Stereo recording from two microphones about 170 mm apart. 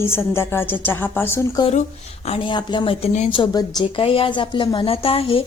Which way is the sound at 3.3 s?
25° left (ahead or behind).